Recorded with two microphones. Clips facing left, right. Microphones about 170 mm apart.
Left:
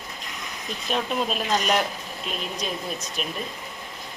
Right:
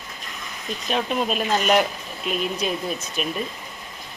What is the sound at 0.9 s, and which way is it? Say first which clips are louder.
Speech: right 2 dB; 5° right (ahead or behind).